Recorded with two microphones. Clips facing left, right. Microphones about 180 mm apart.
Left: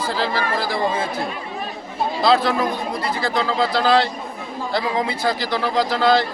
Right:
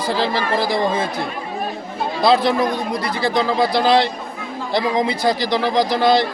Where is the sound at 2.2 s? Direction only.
15° right (ahead or behind).